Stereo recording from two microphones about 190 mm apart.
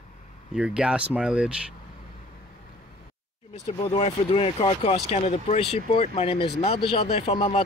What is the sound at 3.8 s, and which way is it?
Speech, 30° left (ahead or behind).